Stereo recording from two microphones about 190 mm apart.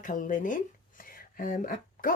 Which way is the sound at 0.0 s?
45° left (ahead or behind).